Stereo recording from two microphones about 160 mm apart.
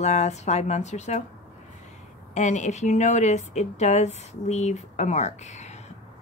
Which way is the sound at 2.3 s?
45° left (ahead or behind).